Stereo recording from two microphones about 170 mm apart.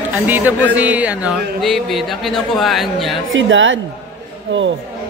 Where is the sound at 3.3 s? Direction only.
90° right.